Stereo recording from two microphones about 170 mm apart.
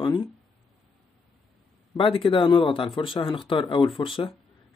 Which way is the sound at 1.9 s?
30° left (ahead or behind).